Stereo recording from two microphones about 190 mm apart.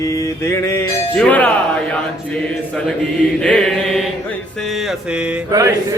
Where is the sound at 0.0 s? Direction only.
15° left (ahead or behind).